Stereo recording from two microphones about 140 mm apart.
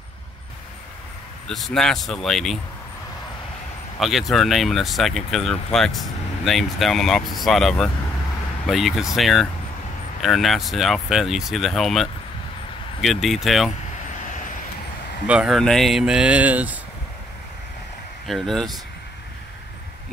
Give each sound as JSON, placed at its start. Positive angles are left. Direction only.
{"t": 1.5, "sound": "speech", "side_deg": 5}
{"t": 4.0, "sound": "speech", "side_deg": 0}
{"t": 15.2, "sound": "speech", "side_deg": -5}
{"t": 18.2, "sound": "speech", "side_deg": 0}